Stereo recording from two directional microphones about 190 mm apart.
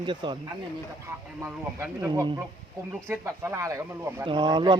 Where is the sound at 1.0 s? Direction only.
15° right (ahead or behind).